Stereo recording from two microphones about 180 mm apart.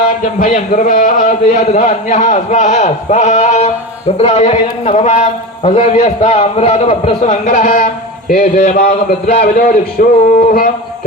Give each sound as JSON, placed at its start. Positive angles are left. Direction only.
{"t": 0.3, "sound": "a man's voice", "side_deg": 45}